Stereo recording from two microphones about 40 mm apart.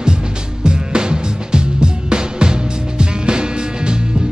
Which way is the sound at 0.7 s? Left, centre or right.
Right.